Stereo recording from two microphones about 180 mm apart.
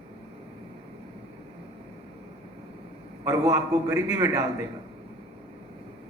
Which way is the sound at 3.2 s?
20° right (ahead or behind).